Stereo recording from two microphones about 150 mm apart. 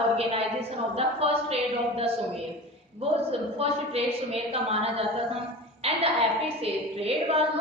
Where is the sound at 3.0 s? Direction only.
40° right (ahead or behind).